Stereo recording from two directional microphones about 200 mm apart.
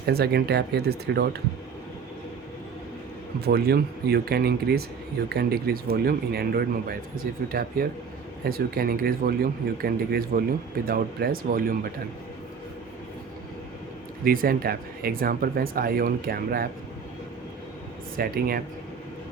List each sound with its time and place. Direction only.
0.0 s speech: 55° right (ahead or behind)
3.4 s speech: 50° right (ahead or behind)
14.3 s speech: 45° right (ahead or behind)
18.2 s speech: 45° right (ahead or behind)